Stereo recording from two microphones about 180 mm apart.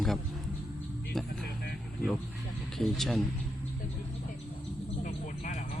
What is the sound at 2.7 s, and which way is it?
Speech, centre (ahead or behind).